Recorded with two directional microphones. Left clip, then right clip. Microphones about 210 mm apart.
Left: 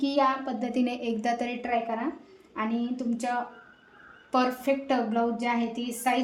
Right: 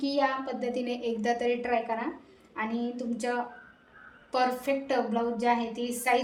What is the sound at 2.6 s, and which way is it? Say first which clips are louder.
Speech: left 2 dB; 35° left (ahead or behind).